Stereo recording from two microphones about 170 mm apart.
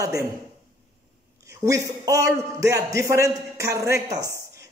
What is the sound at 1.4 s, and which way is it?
A man's voice, 20° right (ahead or behind).